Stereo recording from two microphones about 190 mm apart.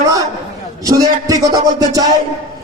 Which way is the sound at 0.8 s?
20° right (ahead or behind).